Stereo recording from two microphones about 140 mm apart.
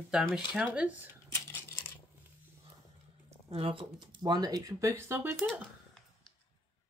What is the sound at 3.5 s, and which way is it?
Speech, 40° right (ahead or behind).